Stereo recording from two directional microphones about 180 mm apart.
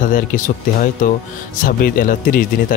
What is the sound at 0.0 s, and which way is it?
Speech, 50° left (ahead or behind).